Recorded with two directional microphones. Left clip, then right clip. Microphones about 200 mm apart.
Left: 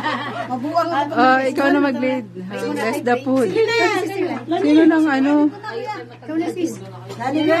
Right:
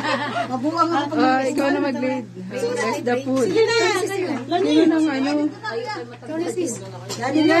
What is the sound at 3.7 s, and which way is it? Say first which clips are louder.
Speech: left 1 dB; 55° left (ahead or behind).